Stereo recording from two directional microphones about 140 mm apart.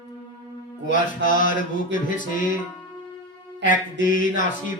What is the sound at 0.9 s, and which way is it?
Music, 70° left (ahead or behind).